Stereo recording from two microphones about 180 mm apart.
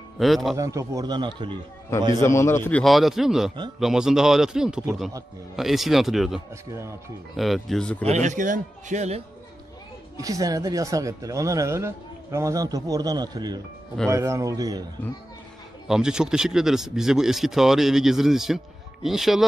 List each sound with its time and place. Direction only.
0.2 s speech: centre (ahead or behind)
0.6 s speech: 15° right (ahead or behind)
2.1 s a man's voice: 15° left (ahead or behind)
2.8 s speech: centre (ahead or behind)
6.7 s a man's voice: 15° right (ahead or behind)
7.3 s speech: centre (ahead or behind)
8.0 s speech: 40° right (ahead or behind)
10.1 s a man's voice: 20° right (ahead or behind)
15.9 s speech: 5° right (ahead or behind)